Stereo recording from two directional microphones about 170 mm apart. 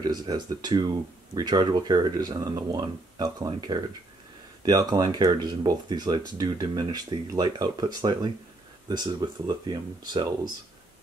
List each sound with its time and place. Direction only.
0.0 s speech: 25° right (ahead or behind)